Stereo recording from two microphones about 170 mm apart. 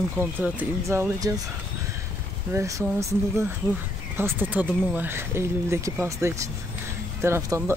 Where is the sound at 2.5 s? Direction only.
15° right (ahead or behind).